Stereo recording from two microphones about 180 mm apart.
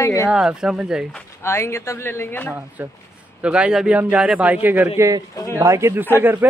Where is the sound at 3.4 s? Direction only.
5° right (ahead or behind).